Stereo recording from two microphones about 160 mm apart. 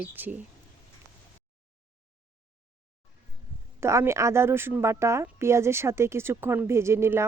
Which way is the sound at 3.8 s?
20° right (ahead or behind).